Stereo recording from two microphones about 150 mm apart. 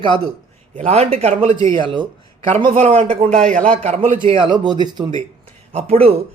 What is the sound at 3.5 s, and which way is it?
Speech, 60° right (ahead or behind).